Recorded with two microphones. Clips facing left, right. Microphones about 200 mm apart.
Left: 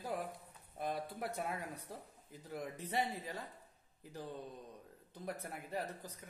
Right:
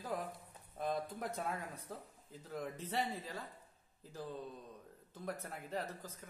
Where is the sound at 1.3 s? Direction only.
15° left (ahead or behind).